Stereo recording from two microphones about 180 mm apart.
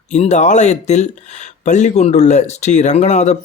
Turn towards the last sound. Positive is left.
turn(degrees=40)  # may be behind; listen again after turning